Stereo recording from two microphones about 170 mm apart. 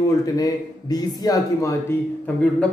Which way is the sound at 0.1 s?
20° left (ahead or behind).